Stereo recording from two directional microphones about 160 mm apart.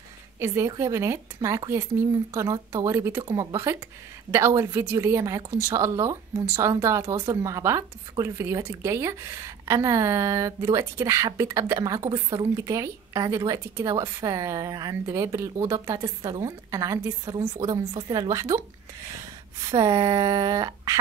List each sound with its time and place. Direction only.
0.4 s a woman's voice: 20° right (ahead or behind)
19.6 s a woman's voice: 25° right (ahead or behind)